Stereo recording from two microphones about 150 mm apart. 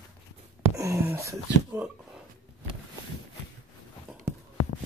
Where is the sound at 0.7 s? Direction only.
20° right (ahead or behind).